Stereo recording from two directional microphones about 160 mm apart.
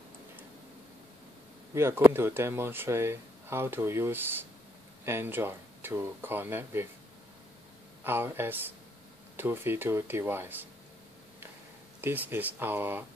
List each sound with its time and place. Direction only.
1.7 s speech: 15° right (ahead or behind)
8.0 s speech: 15° right (ahead or behind)
12.0 s speech: 15° right (ahead or behind)